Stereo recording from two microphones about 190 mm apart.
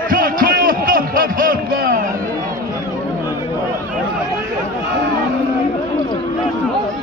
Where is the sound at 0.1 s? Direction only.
45° right (ahead or behind).